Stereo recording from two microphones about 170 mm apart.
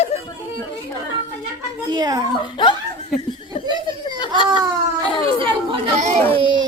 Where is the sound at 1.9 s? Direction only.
25° right (ahead or behind).